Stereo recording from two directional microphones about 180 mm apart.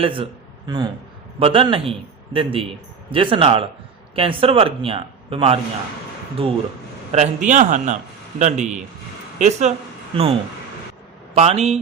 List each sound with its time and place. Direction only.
0.0 s speech: 30° right (ahead or behind)
1.4 s a man's voice: 30° right (ahead or behind)
7.1 s a man's voice: 40° right (ahead or behind)
11.3 s a man's voice: 35° right (ahead or behind)